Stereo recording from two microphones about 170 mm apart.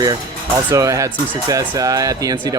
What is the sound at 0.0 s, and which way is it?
Speech, 20° right (ahead or behind).